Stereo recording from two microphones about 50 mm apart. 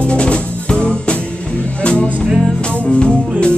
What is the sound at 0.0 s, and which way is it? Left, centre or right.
Music, left.